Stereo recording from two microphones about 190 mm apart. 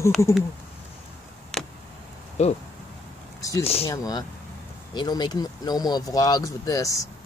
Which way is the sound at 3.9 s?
20° left (ahead or behind).